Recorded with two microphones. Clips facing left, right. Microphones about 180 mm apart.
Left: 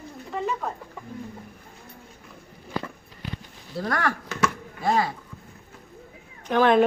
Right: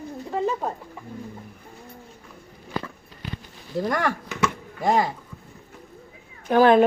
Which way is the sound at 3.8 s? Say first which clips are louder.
Right 3 dB; 15° right (ahead or behind).